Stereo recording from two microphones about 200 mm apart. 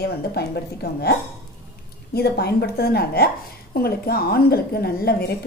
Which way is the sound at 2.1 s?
55° left (ahead or behind).